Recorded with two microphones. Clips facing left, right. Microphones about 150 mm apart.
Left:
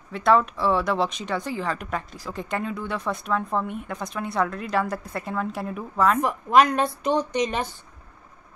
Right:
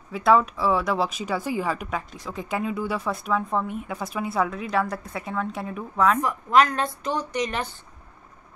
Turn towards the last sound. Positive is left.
turn(degrees=20)  # may be behind; listen again after turning